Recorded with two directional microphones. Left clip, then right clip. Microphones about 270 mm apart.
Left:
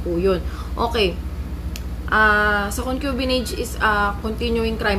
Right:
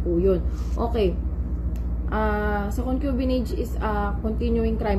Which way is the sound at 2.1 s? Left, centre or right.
Left.